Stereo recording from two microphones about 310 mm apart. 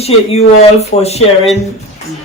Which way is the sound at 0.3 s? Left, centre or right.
Centre.